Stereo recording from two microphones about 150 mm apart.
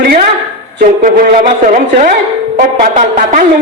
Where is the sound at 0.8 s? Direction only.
65° right (ahead or behind).